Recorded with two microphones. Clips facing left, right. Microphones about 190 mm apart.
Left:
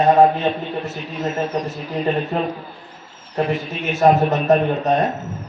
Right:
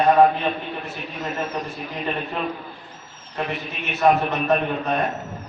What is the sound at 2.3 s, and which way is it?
A man's voice, 35° left (ahead or behind).